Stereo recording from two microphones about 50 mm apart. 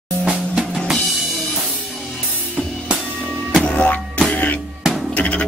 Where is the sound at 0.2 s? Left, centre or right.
Centre.